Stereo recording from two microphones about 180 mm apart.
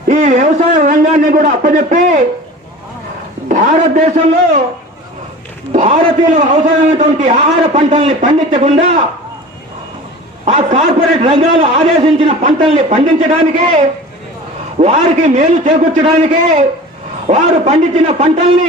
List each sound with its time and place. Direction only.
0.1 s a man's voice: 40° right (ahead or behind)
3.5 s a man's voice: 45° right (ahead or behind)
5.7 s a man's voice: 40° right (ahead or behind)
10.4 s a man's voice: 35° right (ahead or behind)